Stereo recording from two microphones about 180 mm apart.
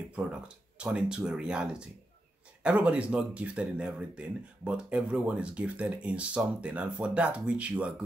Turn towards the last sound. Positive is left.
turn(degrees=-5)  # may be behind; listen again after turning